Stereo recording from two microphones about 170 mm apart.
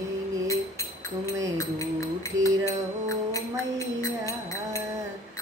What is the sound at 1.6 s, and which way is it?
Music, 20° left (ahead or behind).